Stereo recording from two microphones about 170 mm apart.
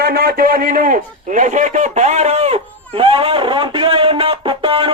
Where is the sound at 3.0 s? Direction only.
30° right (ahead or behind).